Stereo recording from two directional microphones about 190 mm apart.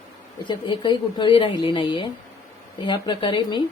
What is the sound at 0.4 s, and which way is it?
Speech, 25° left (ahead or behind).